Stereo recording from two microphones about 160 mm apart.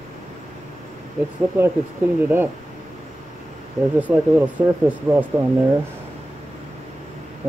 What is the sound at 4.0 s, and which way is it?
Speech, 10° right (ahead or behind).